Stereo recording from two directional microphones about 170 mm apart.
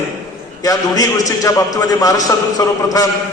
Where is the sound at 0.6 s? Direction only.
20° left (ahead or behind).